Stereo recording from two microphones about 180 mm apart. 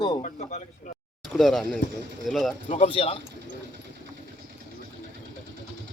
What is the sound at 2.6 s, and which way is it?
Speech, 30° left (ahead or behind).